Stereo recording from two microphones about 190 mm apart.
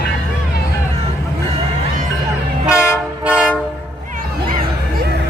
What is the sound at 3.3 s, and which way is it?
Train, 5° right (ahead or behind).